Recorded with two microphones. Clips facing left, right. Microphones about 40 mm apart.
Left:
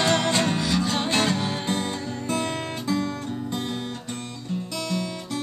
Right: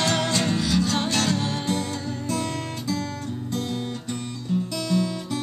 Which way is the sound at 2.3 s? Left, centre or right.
Left.